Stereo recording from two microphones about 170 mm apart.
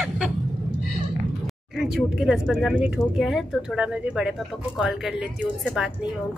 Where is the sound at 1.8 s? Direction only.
Centre (ahead or behind).